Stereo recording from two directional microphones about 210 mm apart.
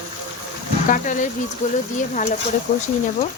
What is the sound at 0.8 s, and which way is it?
Speech, 40° left (ahead or behind).